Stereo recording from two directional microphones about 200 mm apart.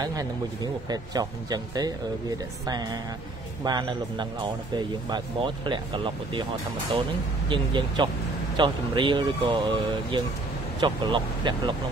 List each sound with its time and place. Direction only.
0.0 s speech: 20° right (ahead or behind)
3.6 s speech: 20° right (ahead or behind)
7.4 s speech: 25° right (ahead or behind)